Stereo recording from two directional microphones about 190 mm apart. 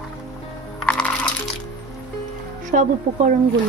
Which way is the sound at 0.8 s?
5° left (ahead or behind).